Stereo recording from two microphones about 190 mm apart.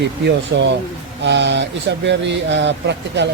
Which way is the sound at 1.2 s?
70° right (ahead or behind).